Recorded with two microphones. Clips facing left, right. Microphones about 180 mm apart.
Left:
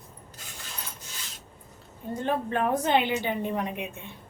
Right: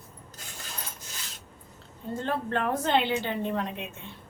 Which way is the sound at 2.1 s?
15° left (ahead or behind).